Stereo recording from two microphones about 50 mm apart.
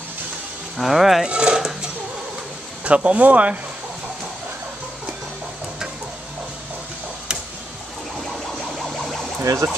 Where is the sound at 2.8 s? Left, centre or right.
Right.